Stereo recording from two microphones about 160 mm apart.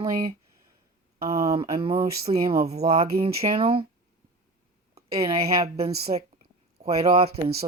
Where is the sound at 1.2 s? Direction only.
40° right (ahead or behind).